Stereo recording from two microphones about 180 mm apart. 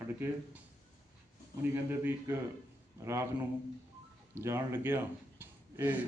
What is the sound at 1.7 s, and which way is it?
A man's voice, 10° right (ahead or behind).